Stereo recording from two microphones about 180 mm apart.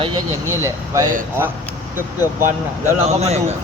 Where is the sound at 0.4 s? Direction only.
15° right (ahead or behind).